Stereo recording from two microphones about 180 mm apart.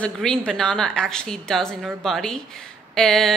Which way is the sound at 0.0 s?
5° left (ahead or behind).